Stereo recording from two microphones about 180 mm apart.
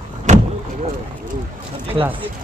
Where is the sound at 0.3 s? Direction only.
40° right (ahead or behind).